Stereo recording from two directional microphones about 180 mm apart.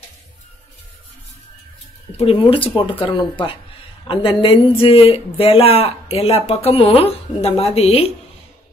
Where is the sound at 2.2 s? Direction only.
30° left (ahead or behind).